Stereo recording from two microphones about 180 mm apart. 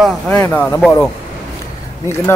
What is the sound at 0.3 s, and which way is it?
Speech, 10° left (ahead or behind).